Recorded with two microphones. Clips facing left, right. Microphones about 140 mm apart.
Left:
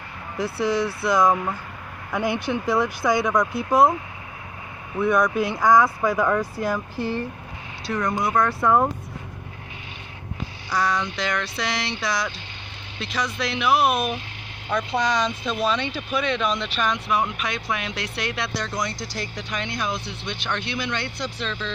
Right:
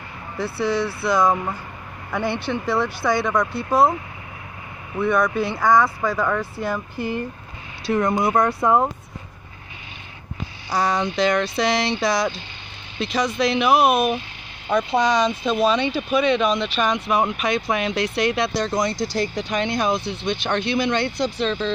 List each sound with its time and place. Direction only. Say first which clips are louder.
0.4 s speech: even; 10° left (ahead or behind)
0.7 s speech: even; centre (ahead or behind)
4.9 s speech: even; centre (ahead or behind)
7.8 s speech: right 5 dB; 25° right (ahead or behind)
10.7 s speech: right 3 dB; 30° right (ahead or behind); by 16.8 s 5° right (ahead or behind)
16.8 s speech: right 2 dB; 20° right (ahead or behind)